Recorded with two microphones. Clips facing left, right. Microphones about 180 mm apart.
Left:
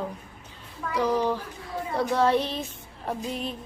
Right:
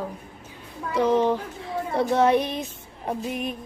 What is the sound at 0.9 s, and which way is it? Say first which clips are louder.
Child singing: right 4 dB; 25° right (ahead or behind).